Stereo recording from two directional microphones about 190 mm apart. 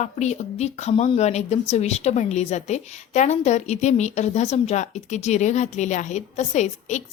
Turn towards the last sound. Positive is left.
turn(degrees=35)  # may be behind; listen again after turning